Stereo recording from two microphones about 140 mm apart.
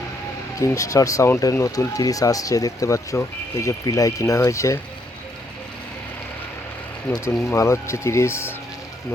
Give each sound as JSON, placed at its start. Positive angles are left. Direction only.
{"t": 0.6, "sound": "speech", "side_deg": 25}
{"t": 7.5, "sound": "speech", "side_deg": 20}